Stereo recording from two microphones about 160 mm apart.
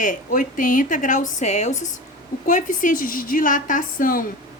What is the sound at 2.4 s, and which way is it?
A woman's voice, 55° left (ahead or behind).